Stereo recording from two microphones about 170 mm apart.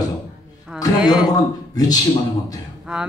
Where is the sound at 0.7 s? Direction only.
5° right (ahead or behind).